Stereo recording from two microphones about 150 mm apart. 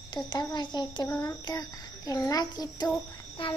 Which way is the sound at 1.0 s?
15° left (ahead or behind).